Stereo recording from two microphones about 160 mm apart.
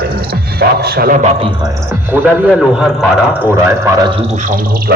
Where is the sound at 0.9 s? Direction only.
60° right (ahead or behind).